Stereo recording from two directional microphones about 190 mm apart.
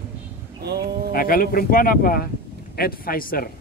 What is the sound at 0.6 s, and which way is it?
Speech, 60° right (ahead or behind).